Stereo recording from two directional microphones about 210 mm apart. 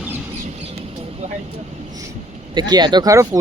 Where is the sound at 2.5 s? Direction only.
20° right (ahead or behind).